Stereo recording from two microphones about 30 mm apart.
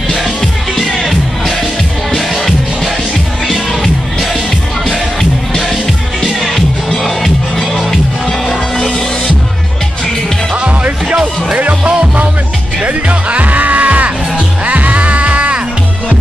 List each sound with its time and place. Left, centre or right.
6.2 s music: centre
11.5 s music: right